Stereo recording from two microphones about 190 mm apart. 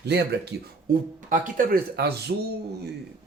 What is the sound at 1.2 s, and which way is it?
Speech, 45° right (ahead or behind).